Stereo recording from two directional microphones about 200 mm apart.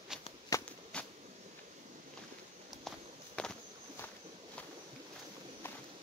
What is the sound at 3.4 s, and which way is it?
Walk, 5° left (ahead or behind).